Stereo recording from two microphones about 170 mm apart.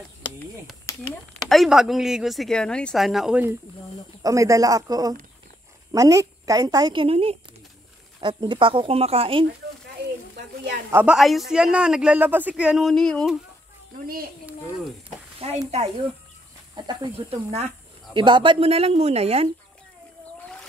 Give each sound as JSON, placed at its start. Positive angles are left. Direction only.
{"t": 0.9, "sound": "a sound", "side_deg": 20}
{"t": 1.4, "sound": "speech", "side_deg": 0}
{"t": 4.2, "sound": "a woman's voice", "side_deg": -20}
{"t": 10.9, "sound": "speech", "side_deg": -10}
{"t": 11.1, "sound": "speech", "side_deg": 0}
{"t": 15.3, "sound": "a sound", "side_deg": -35}
{"t": 16.7, "sound": "speech", "side_deg": -25}
{"t": 17.3, "sound": "speech", "side_deg": -40}